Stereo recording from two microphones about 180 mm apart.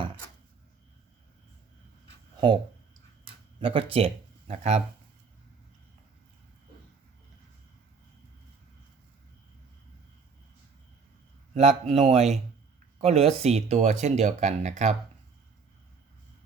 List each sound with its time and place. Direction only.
3.6 s speech: 30° right (ahead or behind)
11.5 s speech: 40° right (ahead or behind)